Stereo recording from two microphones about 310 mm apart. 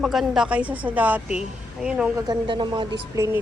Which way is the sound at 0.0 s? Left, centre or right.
Centre.